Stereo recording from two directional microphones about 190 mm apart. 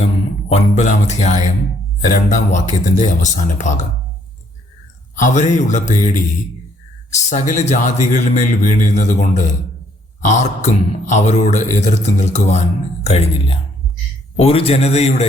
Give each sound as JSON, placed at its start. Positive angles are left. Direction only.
{"t": 0.0, "sound": "a sound", "side_deg": 35}
{"t": 2.1, "sound": "speech", "side_deg": 45}
{"t": 5.1, "sound": "speech", "side_deg": 40}